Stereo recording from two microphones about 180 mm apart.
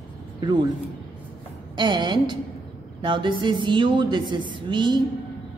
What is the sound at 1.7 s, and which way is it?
Speech, 25° right (ahead or behind).